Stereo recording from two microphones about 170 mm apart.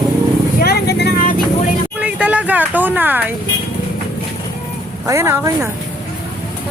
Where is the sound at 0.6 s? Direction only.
70° left (ahead or behind).